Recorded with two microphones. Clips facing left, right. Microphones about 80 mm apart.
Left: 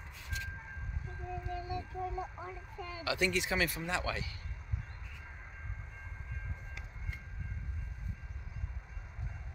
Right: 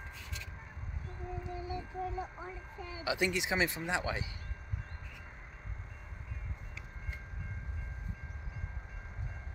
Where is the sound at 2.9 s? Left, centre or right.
Centre.